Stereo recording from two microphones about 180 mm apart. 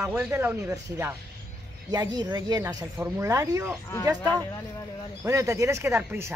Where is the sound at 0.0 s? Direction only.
10° right (ahead or behind).